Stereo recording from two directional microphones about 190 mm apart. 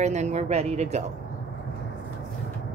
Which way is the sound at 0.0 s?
35° right (ahead or behind).